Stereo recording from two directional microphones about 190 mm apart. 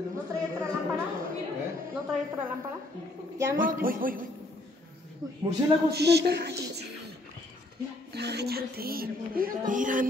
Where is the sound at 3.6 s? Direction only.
45° right (ahead or behind).